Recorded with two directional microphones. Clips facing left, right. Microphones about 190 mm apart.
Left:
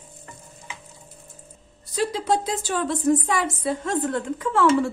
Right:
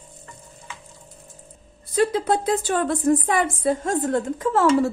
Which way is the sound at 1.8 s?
55° right (ahead or behind).